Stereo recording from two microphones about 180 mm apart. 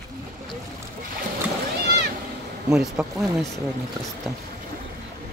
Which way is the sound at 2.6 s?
5° right (ahead or behind).